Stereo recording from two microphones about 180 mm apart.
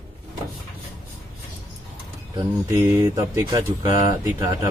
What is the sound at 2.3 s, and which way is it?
Speech, 15° right (ahead or behind).